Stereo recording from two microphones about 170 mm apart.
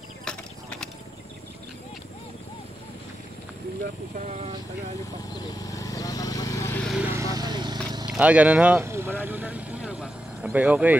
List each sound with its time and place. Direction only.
0.2 s clip-clop: 5° left (ahead or behind)
4.2 s speech: 40° right (ahead or behind)
5.4 s a sound: 20° left (ahead or behind)
7.0 s vehicle: 15° right (ahead or behind)
8.1 s vehicle: 10° right (ahead or behind)